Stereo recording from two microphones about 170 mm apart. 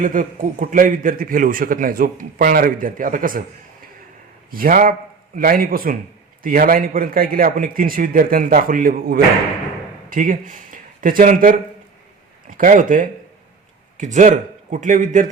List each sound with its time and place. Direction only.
0.0 s a man's voice: 50° right (ahead or behind)
4.5 s a man's voice: 55° right (ahead or behind)